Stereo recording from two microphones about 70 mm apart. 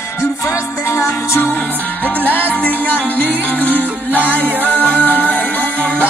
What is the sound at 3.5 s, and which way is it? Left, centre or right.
Music, left.